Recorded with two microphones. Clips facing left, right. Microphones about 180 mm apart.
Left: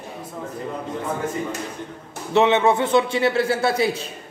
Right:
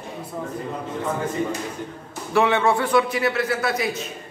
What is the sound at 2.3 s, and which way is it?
A man's voice, 20° left (ahead or behind).